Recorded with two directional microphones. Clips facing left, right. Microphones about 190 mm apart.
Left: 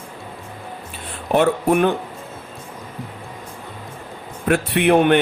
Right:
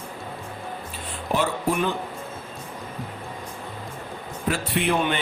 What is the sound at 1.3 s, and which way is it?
Speech, 60° left (ahead or behind).